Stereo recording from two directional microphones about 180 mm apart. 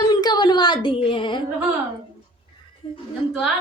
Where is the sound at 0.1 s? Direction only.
20° left (ahead or behind).